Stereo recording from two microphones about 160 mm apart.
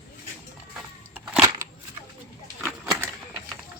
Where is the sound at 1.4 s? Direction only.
20° right (ahead or behind).